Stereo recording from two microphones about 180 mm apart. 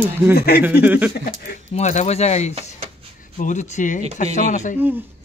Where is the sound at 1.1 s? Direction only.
55° left (ahead or behind).